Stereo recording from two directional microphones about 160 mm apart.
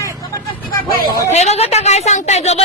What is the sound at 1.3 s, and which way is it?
A woman's voice, 45° left (ahead or behind).